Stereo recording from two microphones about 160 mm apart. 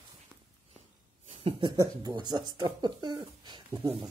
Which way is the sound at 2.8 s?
30° right (ahead or behind).